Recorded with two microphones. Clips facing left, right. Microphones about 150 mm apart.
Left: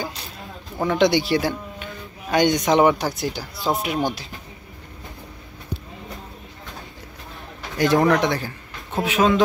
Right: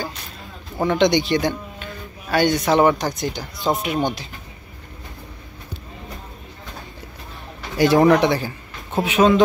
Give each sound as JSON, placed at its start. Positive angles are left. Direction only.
{"t": 0.7, "sound": "speech", "side_deg": 0}
{"t": 2.2, "sound": "a man's voice", "side_deg": 15}
{"t": 2.9, "sound": "speech", "side_deg": 5}
{"t": 7.7, "sound": "a man's voice", "side_deg": -5}